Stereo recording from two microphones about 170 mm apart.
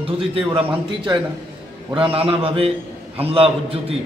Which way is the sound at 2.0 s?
30° right (ahead or behind).